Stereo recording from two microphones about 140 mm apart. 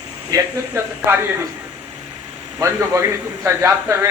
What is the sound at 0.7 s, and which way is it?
Speech, 15° right (ahead or behind).